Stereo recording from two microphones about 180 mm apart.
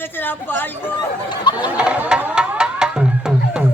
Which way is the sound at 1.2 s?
25° left (ahead or behind).